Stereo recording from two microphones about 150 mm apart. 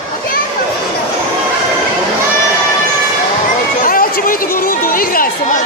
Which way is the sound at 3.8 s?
70° left (ahead or behind).